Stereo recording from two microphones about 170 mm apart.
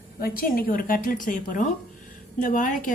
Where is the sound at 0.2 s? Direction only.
60° left (ahead or behind).